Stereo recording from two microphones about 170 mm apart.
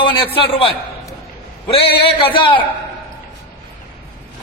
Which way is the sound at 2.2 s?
30° left (ahead or behind).